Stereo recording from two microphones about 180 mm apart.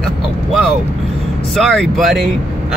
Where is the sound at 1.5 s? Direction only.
Centre (ahead or behind).